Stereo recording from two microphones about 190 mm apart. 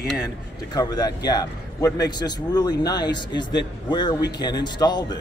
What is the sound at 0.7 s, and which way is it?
A man's voice, 20° left (ahead or behind).